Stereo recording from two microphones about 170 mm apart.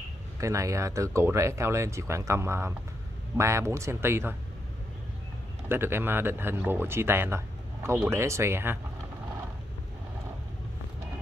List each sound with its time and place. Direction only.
0.4 s speech: 20° right (ahead or behind)
5.7 s speech: 15° right (ahead or behind)